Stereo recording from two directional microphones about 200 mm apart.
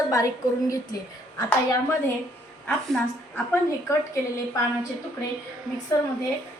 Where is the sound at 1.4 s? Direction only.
20° left (ahead or behind).